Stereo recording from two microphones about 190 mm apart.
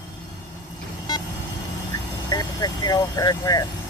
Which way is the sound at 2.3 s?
20° left (ahead or behind).